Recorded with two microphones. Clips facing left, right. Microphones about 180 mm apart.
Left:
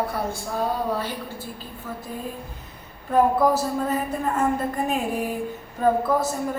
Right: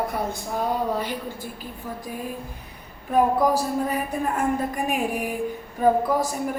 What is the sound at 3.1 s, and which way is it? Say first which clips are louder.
A woman's voice: left 1 dB; 10° right (ahead or behind).